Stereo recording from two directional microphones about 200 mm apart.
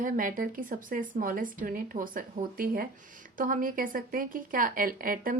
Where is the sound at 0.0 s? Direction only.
40° right (ahead or behind).